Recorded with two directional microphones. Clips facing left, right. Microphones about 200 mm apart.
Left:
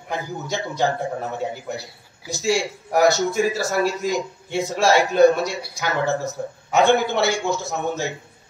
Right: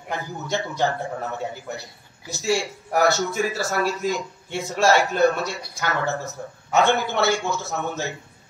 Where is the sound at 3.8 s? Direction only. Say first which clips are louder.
Even; 10° left (ahead or behind).